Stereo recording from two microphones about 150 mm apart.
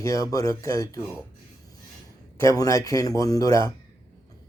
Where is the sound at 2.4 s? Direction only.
20° left (ahead or behind).